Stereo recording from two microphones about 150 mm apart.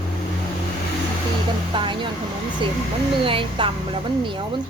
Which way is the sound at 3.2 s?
35° right (ahead or behind).